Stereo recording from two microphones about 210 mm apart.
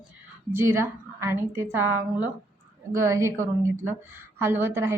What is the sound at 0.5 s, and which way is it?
A woman's voice, 10° right (ahead or behind).